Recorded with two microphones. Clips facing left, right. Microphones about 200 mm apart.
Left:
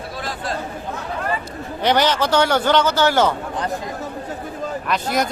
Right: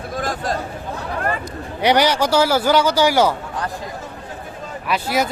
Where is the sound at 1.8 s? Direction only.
10° right (ahead or behind).